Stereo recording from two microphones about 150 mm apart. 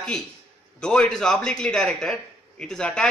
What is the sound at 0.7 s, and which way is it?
A man's voice, 5° left (ahead or behind).